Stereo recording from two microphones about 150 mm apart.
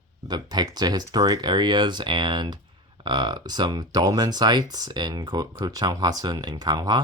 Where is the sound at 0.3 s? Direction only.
30° right (ahead or behind).